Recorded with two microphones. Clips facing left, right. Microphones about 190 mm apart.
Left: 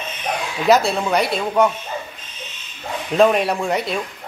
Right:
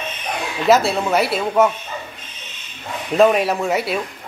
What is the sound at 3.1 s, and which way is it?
Speech, centre (ahead or behind).